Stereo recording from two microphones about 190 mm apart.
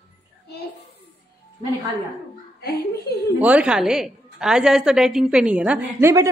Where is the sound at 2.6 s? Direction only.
60° left (ahead or behind).